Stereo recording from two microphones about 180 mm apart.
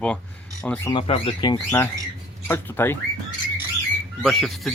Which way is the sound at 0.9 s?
30° left (ahead or behind).